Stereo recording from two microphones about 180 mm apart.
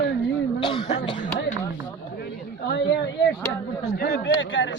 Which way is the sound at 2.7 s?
70° left (ahead or behind).